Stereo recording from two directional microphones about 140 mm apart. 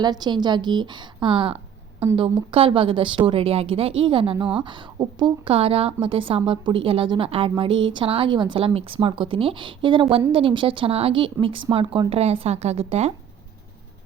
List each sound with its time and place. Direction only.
0.0 s a woman's voice: 30° right (ahead or behind); by 13.1 s 45° right (ahead or behind)